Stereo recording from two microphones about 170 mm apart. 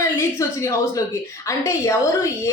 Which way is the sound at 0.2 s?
15° left (ahead or behind).